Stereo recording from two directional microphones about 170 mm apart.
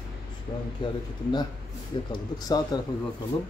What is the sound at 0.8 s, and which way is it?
Speech, 30° left (ahead or behind).